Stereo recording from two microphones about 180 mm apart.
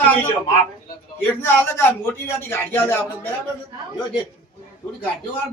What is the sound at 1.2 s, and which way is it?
A man's voice, 15° left (ahead or behind).